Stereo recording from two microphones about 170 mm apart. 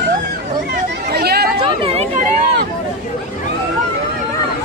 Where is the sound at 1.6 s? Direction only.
35° right (ahead or behind).